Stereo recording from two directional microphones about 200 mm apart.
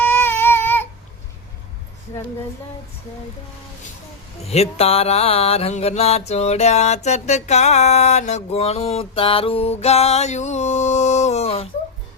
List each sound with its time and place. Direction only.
0.0 s baby cry: 10° left (ahead or behind)
4.4 s mantra: 30° left (ahead or behind)